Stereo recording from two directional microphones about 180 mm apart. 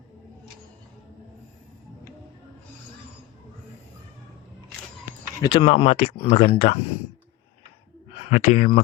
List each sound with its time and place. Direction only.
5.4 s speech: 25° left (ahead or behind)
8.2 s speech: 40° left (ahead or behind)